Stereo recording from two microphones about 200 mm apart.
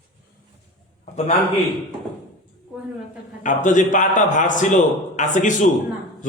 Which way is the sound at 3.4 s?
40° left (ahead or behind).